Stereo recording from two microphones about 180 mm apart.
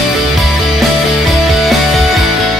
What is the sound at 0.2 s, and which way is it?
Music, centre (ahead or behind).